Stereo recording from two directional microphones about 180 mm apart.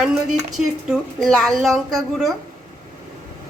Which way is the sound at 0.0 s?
5° right (ahead or behind).